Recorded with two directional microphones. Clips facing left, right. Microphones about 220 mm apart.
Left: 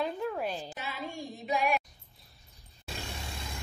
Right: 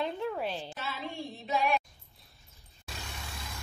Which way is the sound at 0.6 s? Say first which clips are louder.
Even; 10° left (ahead or behind).